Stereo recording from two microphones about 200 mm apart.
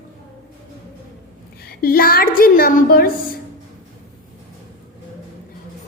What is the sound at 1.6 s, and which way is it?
A woman's voice, 50° left (ahead or behind).